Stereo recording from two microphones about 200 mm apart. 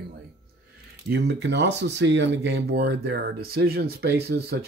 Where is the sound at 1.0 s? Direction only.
60° right (ahead or behind).